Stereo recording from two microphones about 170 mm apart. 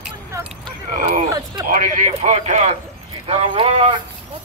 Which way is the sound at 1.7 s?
50° right (ahead or behind).